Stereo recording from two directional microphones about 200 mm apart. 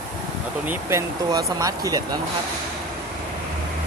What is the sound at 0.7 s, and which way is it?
Speech, 15° right (ahead or behind).